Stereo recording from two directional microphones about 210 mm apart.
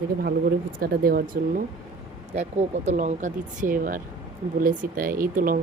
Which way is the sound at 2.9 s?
35° right (ahead or behind).